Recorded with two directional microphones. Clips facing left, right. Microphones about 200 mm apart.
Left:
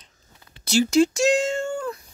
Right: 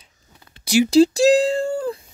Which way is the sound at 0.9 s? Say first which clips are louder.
Right 6 dB; 35° right (ahead or behind).